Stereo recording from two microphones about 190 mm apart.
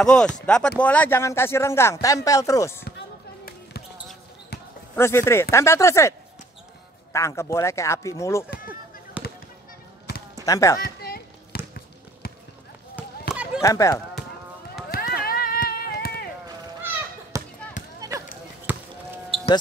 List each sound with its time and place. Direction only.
0.0 s speech: 5° left (ahead or behind)
4.9 s speech: 15° left (ahead or behind)
9.2 s basketball bounce: 5° right (ahead or behind)
10.4 s speech: 15° left (ahead or behind)
10.8 s a sound: 55° left (ahead or behind)
13.3 s a sound: 5° right (ahead or behind)
13.6 s speech: 15° left (ahead or behind)
14.9 s run: 50° left (ahead or behind)
16.4 s a sound: 15° right (ahead or behind)
18.7 s basketball bounce: 10° right (ahead or behind)